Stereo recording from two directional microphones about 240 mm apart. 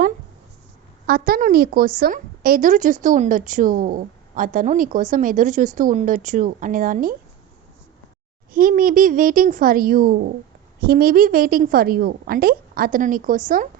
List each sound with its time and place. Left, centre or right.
1.0 s a woman's voice: right
8.5 s a woman's voice: right